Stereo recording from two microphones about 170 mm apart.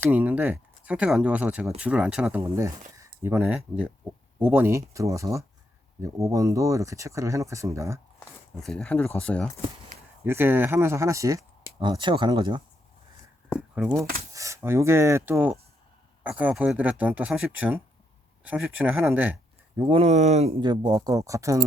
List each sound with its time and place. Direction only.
0.0 s speech: 10° right (ahead or behind)
2.4 s speech: 15° right (ahead or behind)
8.6 s speech: 5° left (ahead or behind)
10.2 s speech: 15° right (ahead or behind)
13.6 s speech: 10° right (ahead or behind)
19.9 s speech: 40° right (ahead or behind)
20.6 s speech: 25° right (ahead or behind)